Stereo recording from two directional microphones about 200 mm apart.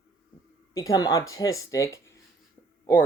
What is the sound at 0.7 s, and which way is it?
Speech, 15° left (ahead or behind).